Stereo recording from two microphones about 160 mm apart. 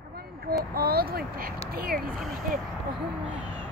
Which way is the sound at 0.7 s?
70° right (ahead or behind).